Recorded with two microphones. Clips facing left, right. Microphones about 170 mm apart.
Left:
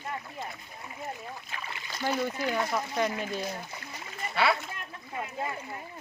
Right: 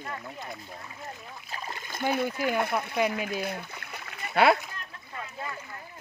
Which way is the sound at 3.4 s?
60° right (ahead or behind).